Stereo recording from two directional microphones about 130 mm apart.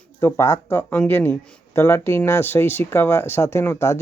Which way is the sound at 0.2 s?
20° left (ahead or behind).